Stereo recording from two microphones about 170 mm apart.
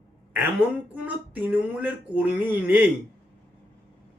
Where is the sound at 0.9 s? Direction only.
10° right (ahead or behind).